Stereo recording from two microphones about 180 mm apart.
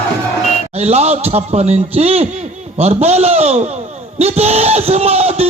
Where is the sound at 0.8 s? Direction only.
35° right (ahead or behind).